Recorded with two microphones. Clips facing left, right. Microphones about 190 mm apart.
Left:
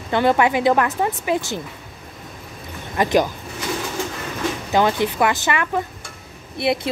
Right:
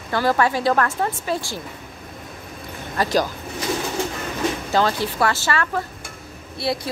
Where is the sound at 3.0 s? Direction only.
20° left (ahead or behind).